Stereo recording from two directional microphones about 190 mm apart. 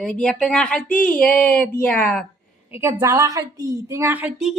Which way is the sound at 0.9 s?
45° left (ahead or behind).